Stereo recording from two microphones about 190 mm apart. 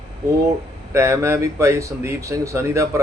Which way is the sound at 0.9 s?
15° right (ahead or behind).